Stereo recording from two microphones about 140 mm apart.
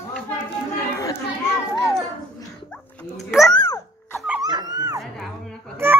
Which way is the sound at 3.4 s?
25° left (ahead or behind).